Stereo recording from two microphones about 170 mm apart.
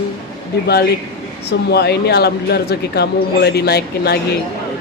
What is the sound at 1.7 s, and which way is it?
Speech, 75° left (ahead or behind).